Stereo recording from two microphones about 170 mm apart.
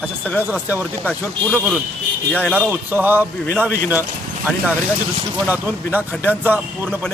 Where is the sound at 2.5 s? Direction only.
10° right (ahead or behind).